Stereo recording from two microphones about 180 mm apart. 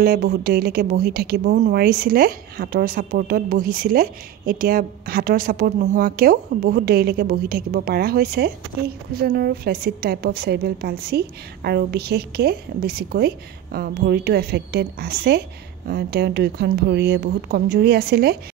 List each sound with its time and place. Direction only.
0.0 s a woman's voice: 60° right (ahead or behind)